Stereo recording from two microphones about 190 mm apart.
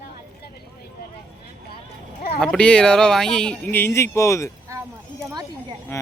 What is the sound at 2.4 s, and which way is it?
Speech, 5° left (ahead or behind).